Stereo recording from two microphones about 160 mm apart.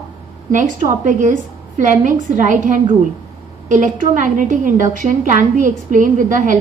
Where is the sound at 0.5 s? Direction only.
55° right (ahead or behind).